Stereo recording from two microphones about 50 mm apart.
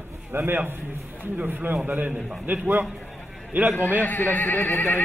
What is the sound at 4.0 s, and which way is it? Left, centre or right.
Speech, left.